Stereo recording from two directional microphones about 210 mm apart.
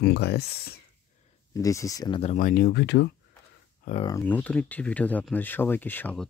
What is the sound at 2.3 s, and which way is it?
Speech, 40° left (ahead or behind).